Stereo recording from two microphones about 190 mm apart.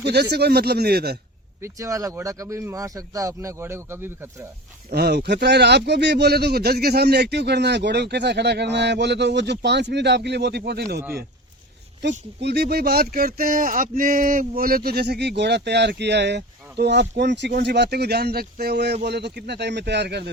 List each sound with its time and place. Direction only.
0.0 s speech: 60° right (ahead or behind)
1.6 s speech: 15° right (ahead or behind)
4.9 s speech: 60° right (ahead or behind)
12.4 s speech: 60° right (ahead or behind)